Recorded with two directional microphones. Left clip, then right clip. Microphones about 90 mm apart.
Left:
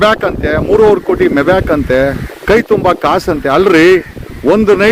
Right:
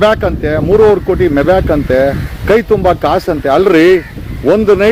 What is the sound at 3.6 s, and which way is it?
A man's voice, 35° left (ahead or behind).